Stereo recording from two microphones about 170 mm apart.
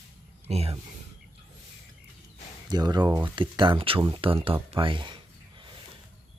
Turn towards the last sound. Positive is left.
turn(degrees=-30)  # may be behind; listen again after turning